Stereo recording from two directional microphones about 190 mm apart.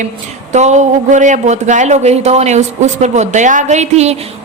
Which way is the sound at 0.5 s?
35° right (ahead or behind).